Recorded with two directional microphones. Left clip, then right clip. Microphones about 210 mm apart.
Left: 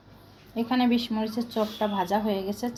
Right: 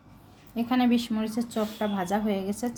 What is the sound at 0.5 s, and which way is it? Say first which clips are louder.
A woman's voice: even; 15° right (ahead or behind).